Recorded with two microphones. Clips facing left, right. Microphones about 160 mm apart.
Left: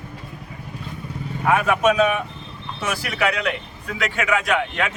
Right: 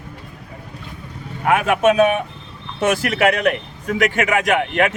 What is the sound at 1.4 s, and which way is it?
Speech, 60° right (ahead or behind).